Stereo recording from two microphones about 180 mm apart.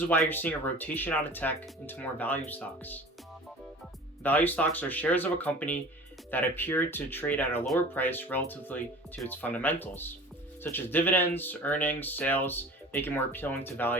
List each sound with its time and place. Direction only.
0.0 s speech: 10° left (ahead or behind)
4.2 s speech: 10° left (ahead or behind)